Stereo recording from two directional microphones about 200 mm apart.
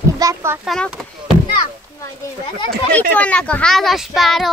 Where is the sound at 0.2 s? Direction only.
15° right (ahead or behind).